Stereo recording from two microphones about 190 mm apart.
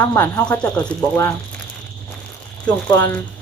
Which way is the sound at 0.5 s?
5° left (ahead or behind).